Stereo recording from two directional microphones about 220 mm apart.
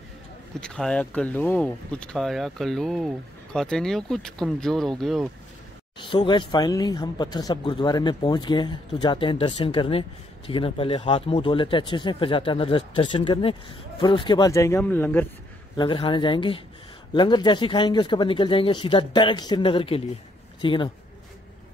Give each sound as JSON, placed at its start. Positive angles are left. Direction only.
{"t": 0.6, "sound": "speech", "side_deg": 5}
{"t": 5.9, "sound": "speech", "side_deg": 20}
{"t": 15.7, "sound": "speech", "side_deg": 20}